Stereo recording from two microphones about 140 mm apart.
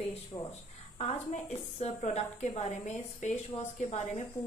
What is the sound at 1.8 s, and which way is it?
A woman's voice, 55° left (ahead or behind).